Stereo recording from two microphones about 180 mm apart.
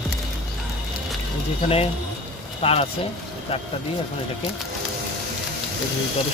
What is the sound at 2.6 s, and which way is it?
Speech, 35° left (ahead or behind).